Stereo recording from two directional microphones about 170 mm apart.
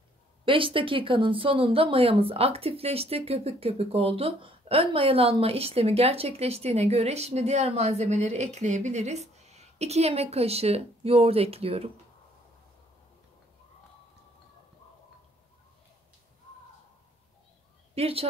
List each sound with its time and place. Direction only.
0.5 s speech: 30° right (ahead or behind)
17.9 s a woman's voice: 35° right (ahead or behind)